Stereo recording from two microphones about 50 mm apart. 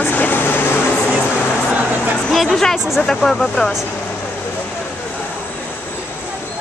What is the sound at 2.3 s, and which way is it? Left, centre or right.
Speech, centre.